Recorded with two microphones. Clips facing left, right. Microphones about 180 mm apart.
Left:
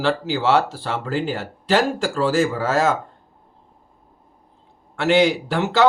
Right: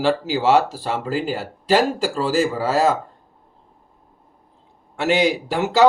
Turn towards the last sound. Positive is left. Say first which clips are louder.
# left 2 dB
turn(degrees=-10)  # may be behind; listen again after turning